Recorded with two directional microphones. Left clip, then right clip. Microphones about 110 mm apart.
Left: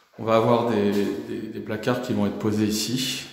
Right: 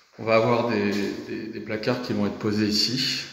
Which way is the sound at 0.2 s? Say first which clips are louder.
Left 1 dB; 25° left (ahead or behind).